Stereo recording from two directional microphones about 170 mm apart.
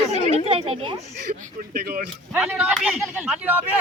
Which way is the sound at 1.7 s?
60° right (ahead or behind).